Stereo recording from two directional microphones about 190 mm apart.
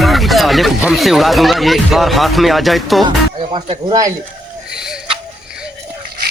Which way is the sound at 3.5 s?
25° right (ahead or behind).